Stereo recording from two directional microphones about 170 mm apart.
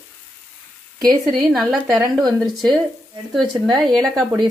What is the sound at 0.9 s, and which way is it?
A woman's voice, centre (ahead or behind).